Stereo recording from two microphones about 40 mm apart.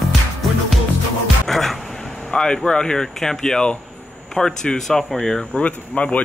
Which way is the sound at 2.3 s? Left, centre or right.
Centre.